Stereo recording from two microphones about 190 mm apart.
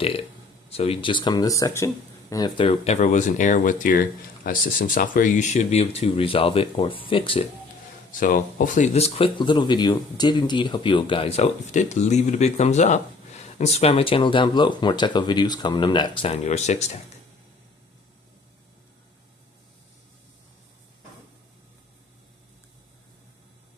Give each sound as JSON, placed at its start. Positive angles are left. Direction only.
{"t": 0.7, "sound": "speech", "side_deg": 30}
{"t": 8.1, "sound": "speech", "side_deg": 45}